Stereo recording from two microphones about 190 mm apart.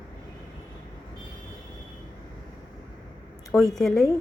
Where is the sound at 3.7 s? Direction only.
Centre (ahead or behind).